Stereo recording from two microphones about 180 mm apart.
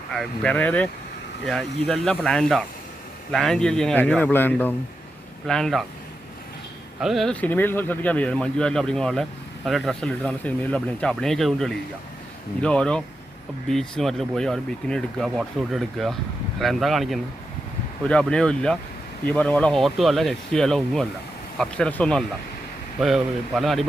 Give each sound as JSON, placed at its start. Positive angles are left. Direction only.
{"t": 0.1, "sound": "speech", "side_deg": 5}
{"t": 7.0, "sound": "speech", "side_deg": 0}